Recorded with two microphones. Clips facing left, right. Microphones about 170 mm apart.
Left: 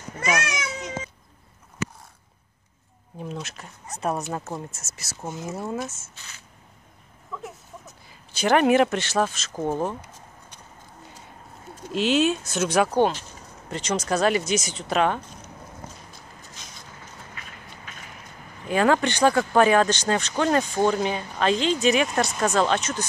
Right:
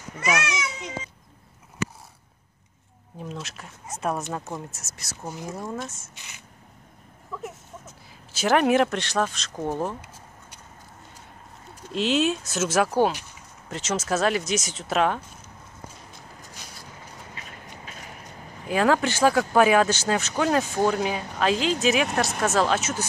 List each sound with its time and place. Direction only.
3.2 s speech: centre (ahead or behind)
6.1 s speech: 15° right (ahead or behind)
7.3 s a sound: 5° right (ahead or behind)
8.1 s speech: centre (ahead or behind)
11.9 s speech: centre (ahead or behind)
16.5 s vehicle: 5° right (ahead or behind)
18.7 s speech: centre (ahead or behind)